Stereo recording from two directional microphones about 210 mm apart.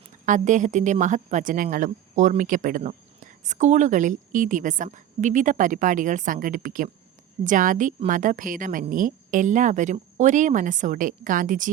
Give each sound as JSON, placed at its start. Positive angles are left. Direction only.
{"t": 0.3, "sound": "speech", "side_deg": -35}